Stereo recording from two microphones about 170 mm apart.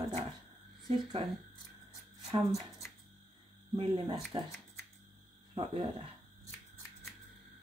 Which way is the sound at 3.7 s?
30° right (ahead or behind).